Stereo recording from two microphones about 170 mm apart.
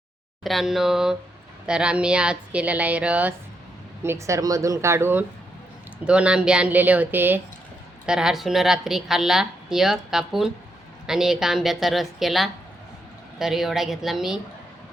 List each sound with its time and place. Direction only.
0.4 s a woman's voice: centre (ahead or behind)